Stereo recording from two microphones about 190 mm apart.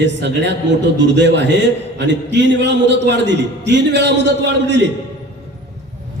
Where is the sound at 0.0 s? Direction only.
65° right (ahead or behind).